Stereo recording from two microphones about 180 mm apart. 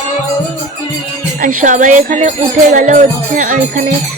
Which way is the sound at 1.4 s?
50° right (ahead or behind).